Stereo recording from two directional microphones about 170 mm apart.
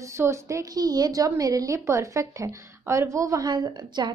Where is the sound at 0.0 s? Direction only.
15° right (ahead or behind).